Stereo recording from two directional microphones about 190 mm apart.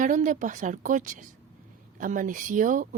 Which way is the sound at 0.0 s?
40° right (ahead or behind).